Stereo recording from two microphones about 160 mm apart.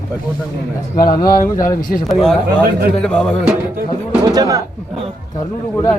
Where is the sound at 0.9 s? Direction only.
25° left (ahead or behind).